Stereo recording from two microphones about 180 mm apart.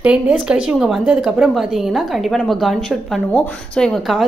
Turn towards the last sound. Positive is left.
turn(degrees=0)  # may be behind; listen again after turning